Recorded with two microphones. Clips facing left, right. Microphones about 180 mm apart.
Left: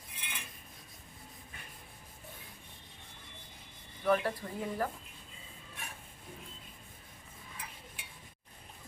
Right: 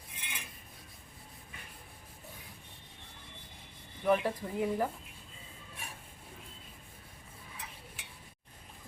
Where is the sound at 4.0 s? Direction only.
15° right (ahead or behind).